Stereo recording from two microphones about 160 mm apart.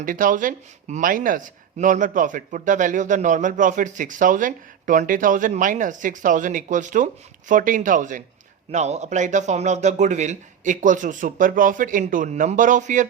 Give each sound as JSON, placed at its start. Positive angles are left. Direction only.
{"t": 0.0, "sound": "speech", "side_deg": -60}